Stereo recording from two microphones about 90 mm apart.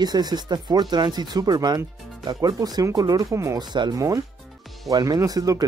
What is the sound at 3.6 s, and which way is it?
Speech, 55° right (ahead or behind).